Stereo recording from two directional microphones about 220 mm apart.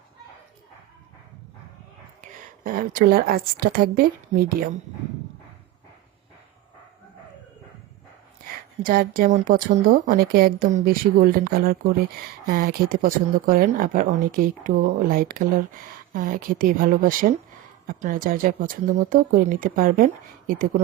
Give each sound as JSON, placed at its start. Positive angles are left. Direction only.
{"t": 2.2, "sound": "a woman's voice", "side_deg": -40}
{"t": 8.8, "sound": "speech", "side_deg": -40}